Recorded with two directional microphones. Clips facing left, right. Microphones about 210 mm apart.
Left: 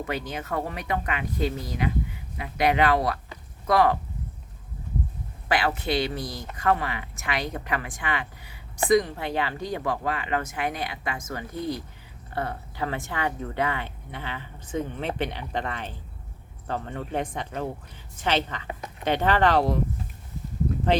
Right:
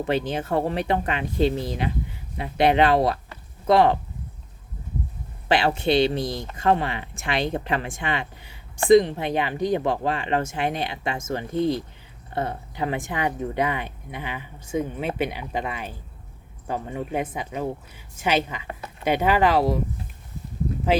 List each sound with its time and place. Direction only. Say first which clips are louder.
0.0 s speech: right 7 dB; 30° right (ahead or behind)
5.5 s speech: right 5 dB; 25° right (ahead or behind); by 18.7 s 10° right (ahead or behind)
18.7 s a sound: even; 15° left (ahead or behind)
19.0 s speech: right 2 dB; 10° right (ahead or behind)